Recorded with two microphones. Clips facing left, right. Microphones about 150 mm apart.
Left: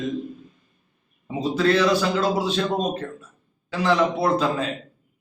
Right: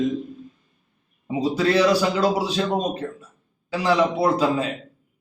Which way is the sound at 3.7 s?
10° right (ahead or behind).